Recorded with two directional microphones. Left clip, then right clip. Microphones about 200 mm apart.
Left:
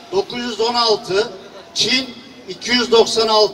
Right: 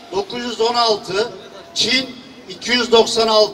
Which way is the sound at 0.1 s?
30° left (ahead or behind).